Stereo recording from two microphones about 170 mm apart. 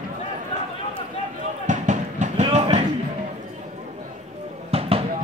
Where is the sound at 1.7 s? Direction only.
45° right (ahead or behind).